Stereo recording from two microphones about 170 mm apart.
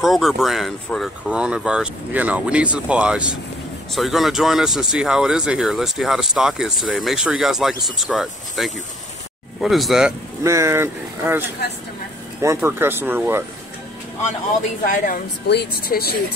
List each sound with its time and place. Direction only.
0.0 s speech: centre (ahead or behind)
10.4 s speech: 15° right (ahead or behind)
14.9 s a woman's voice: 50° left (ahead or behind)
15.4 s speech: 75° left (ahead or behind)